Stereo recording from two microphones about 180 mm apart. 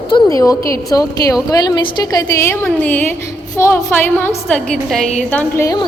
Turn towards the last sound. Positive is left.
turn(degrees=15)  # may be behind; listen again after turning